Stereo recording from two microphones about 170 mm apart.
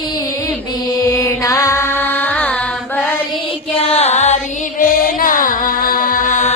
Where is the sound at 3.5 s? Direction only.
35° left (ahead or behind).